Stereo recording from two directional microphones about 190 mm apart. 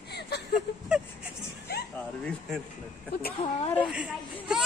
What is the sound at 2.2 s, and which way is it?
Speech, 5° left (ahead or behind).